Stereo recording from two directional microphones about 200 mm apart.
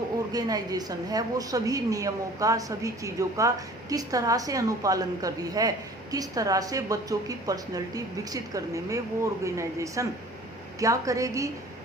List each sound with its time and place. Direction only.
0.3 s a woman's voice: 20° right (ahead or behind)